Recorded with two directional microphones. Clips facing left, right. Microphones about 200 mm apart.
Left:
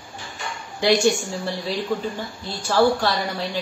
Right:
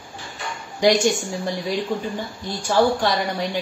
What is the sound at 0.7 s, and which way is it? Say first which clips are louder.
A man's voice: right 1 dB; 15° right (ahead or behind).